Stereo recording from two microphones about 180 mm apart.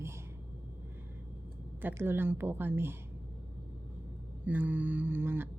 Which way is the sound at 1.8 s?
15° right (ahead or behind).